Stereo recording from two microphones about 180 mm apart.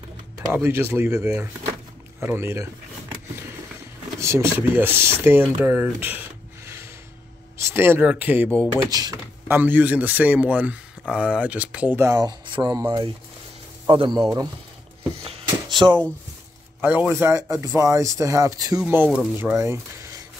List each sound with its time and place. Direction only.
0.5 s speech: 15° right (ahead or behind)
4.2 s speech: 15° right (ahead or behind)
6.6 s a sound: 15° right (ahead or behind)
7.5 s speech: 15° right (ahead or behind)
8.8 s speech: 20° right (ahead or behind)
9.6 s speech: 10° right (ahead or behind); by 12.8 s 25° right (ahead or behind)
13.8 s speech: 25° right (ahead or behind)
15.2 s a sound: 25° right (ahead or behind)
16.8 s speech: 10° right (ahead or behind)
18.8 s speech: 5° right (ahead or behind)